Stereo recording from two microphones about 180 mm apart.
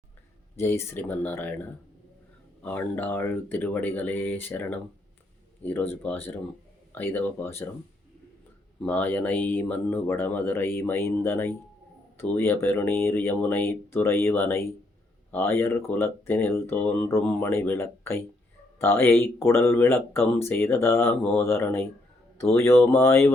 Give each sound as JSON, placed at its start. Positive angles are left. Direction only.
{"t": 0.5, "sound": "speech", "side_deg": 15}
{"t": 8.8, "sound": "speech", "side_deg": 10}